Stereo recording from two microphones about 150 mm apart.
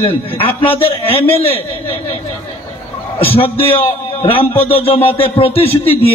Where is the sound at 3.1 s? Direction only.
40° left (ahead or behind).